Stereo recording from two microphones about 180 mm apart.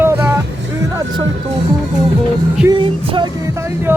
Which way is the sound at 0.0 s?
15° right (ahead or behind).